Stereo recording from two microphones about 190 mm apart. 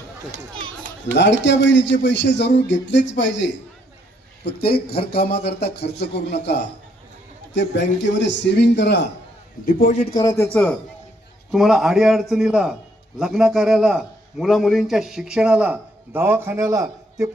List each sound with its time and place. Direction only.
1.1 s a man's voice: 70° left (ahead or behind)
4.4 s a man's voice: 55° left (ahead or behind)
9.6 s a man's voice: 40° left (ahead or behind)
10.2 s a man's voice: 20° left (ahead or behind); by 17.2 s 15° right (ahead or behind)